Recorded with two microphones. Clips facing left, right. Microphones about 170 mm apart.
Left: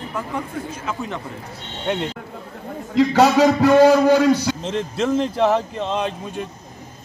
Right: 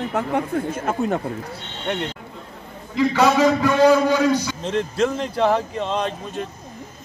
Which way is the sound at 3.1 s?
45° left (ahead or behind).